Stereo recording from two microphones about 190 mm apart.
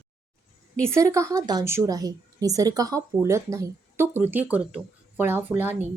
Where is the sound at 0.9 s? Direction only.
15° right (ahead or behind).